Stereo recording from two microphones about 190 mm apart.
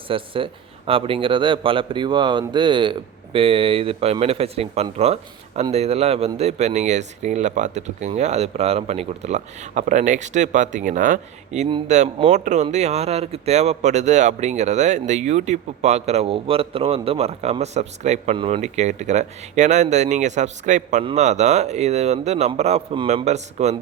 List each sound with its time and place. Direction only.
0.1 s a man's voice: 30° right (ahead or behind)